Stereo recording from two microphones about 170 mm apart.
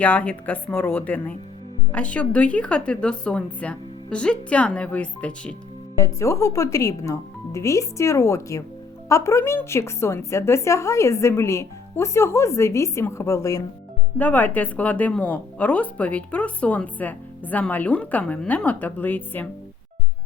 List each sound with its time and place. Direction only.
0.0 s speech: 10° left (ahead or behind)
6.0 s speech: 20° left (ahead or behind)